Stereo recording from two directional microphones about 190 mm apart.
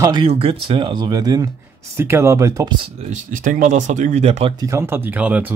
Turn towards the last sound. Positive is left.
turn(degrees=-10)  # may be behind; listen again after turning